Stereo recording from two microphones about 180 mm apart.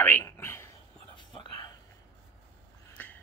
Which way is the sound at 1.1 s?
25° left (ahead or behind).